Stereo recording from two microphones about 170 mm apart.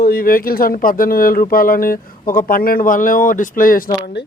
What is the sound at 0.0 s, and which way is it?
Speech, 60° left (ahead or behind).